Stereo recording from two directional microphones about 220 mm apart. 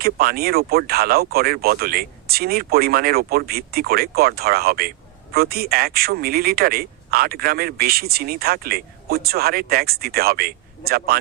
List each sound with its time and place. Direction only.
0.0 s speech: 45° right (ahead or behind)